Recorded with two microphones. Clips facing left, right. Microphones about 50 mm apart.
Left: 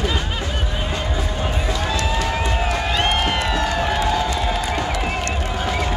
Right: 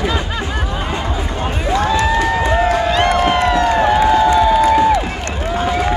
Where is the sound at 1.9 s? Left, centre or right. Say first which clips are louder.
Right 6 dB; right.